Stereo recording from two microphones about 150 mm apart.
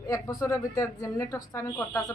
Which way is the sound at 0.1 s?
20° left (ahead or behind).